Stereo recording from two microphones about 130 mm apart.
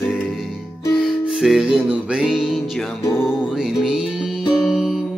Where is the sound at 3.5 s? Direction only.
Centre (ahead or behind).